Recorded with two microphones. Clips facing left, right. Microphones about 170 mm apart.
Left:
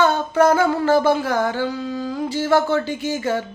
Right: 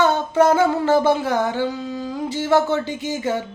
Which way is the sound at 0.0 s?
20° right (ahead or behind).